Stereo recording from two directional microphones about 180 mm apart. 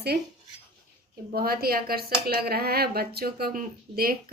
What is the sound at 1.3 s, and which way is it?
A woman's voice, 55° right (ahead or behind).